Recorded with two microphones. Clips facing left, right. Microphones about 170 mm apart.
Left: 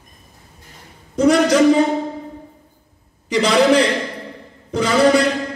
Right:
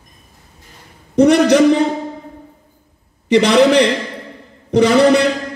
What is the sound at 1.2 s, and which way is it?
Speech, 65° right (ahead or behind).